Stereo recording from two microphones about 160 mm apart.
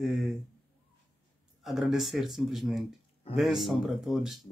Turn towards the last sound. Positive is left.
turn(degrees=0)  # may be behind; listen again after turning